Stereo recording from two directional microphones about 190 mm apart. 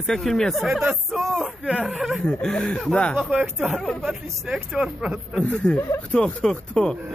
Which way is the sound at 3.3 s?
5° right (ahead or behind).